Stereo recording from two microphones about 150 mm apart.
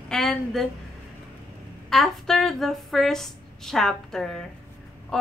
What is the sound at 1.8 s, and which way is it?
A woman's voice, centre (ahead or behind).